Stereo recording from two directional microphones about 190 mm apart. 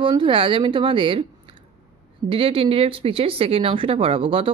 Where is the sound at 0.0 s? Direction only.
25° right (ahead or behind).